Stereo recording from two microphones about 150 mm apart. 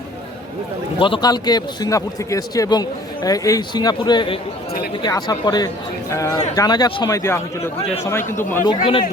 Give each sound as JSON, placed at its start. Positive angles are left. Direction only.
{"t": 0.9, "sound": "a man's voice", "side_deg": 35}
{"t": 8.6, "sound": "speech", "side_deg": 35}